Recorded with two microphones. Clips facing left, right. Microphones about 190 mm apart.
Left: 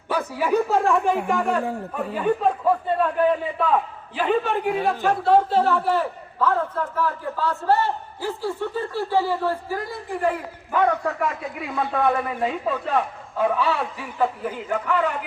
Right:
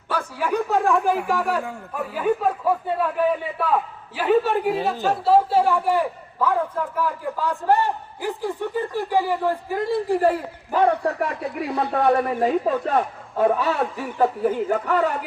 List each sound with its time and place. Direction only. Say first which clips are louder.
0.1 s a man's voice: left 2 dB; 10° left (ahead or behind); by 15.2 s 40° right (ahead or behind)